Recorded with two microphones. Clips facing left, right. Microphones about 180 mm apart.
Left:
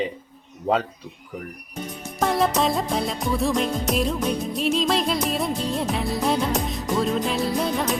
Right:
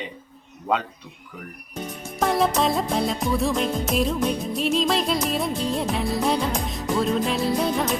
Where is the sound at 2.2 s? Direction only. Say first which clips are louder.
Even; centre (ahead or behind).